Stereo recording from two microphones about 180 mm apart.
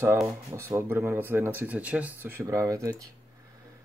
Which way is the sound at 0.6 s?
15° right (ahead or behind).